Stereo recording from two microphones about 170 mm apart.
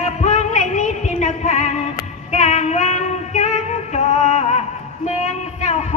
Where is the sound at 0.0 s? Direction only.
40° left (ahead or behind).